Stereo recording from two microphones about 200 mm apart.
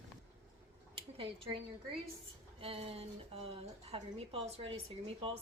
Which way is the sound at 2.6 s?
30° right (ahead or behind).